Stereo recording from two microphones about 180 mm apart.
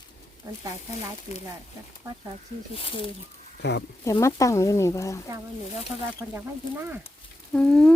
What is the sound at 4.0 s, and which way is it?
Speech, 15° left (ahead or behind).